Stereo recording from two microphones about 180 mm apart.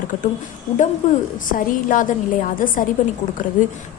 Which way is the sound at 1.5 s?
45° left (ahead or behind).